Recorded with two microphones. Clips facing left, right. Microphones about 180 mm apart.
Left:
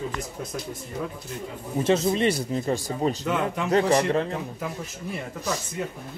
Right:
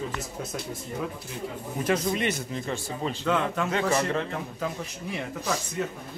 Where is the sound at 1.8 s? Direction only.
25° left (ahead or behind).